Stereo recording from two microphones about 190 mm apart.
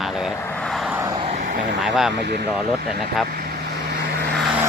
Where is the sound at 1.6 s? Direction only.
65° right (ahead or behind).